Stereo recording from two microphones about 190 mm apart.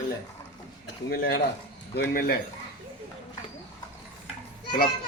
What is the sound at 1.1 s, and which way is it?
Speech, 55° left (ahead or behind).